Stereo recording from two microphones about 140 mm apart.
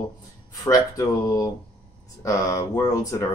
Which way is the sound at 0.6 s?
25° left (ahead or behind).